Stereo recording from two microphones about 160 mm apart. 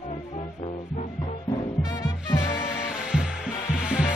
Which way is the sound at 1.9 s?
25° left (ahead or behind).